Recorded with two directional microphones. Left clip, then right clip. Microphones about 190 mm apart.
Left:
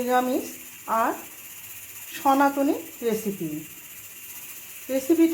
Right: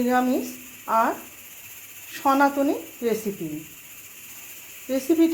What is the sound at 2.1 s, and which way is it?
Speech, centre (ahead or behind).